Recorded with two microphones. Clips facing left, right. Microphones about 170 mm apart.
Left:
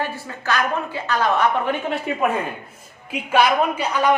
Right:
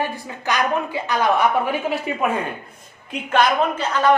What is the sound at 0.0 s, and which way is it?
A woman's voice, 15° right (ahead or behind).